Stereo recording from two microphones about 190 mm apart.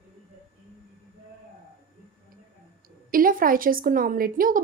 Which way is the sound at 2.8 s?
45° right (ahead or behind).